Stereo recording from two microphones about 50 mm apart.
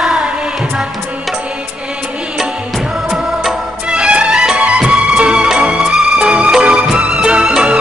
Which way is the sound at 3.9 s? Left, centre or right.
Right.